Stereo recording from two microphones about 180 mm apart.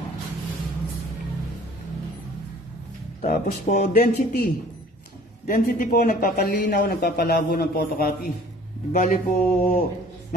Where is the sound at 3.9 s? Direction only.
60° left (ahead or behind).